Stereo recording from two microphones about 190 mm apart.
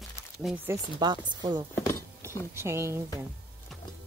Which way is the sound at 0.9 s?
25° right (ahead or behind).